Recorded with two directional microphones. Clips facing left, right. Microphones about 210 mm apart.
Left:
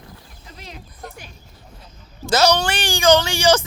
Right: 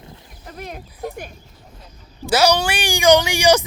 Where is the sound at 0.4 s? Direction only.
55° right (ahead or behind).